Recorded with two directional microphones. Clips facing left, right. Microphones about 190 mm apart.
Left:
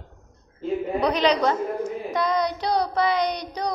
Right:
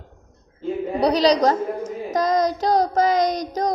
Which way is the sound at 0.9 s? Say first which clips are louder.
Right 5 dB; 35° right (ahead or behind).